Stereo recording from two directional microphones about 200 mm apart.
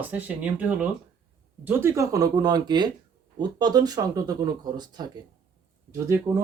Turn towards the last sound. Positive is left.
turn(degrees=-15)  # may be behind; listen again after turning